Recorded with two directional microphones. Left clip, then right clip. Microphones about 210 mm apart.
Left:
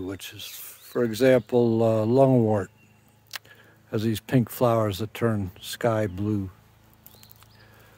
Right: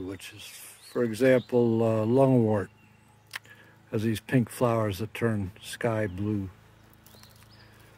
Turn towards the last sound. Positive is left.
turn(degrees=25)  # may be behind; listen again after turning